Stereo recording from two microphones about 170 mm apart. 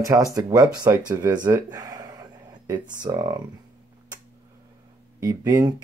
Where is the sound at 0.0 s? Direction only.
20° right (ahead or behind).